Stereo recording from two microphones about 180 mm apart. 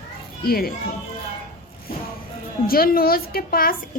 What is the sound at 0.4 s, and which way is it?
Speech, 55° left (ahead or behind).